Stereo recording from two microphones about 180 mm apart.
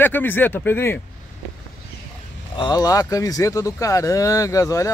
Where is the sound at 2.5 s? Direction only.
20° left (ahead or behind).